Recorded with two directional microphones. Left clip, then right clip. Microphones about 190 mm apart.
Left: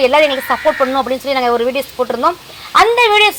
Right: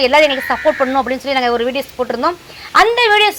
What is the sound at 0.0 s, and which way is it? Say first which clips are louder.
A woman's voice: even; 15° right (ahead or behind).